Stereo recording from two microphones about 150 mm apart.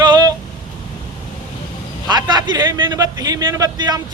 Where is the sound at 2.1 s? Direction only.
30° right (ahead or behind).